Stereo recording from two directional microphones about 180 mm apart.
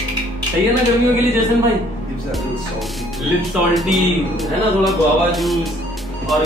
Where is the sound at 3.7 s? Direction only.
Centre (ahead or behind).